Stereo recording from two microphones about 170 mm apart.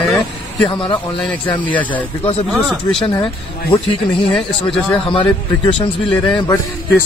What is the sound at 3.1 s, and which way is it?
Speech, 25° left (ahead or behind).